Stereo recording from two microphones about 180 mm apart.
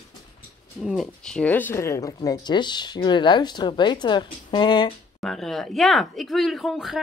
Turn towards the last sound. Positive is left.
turn(degrees=0)  # may be behind; listen again after turning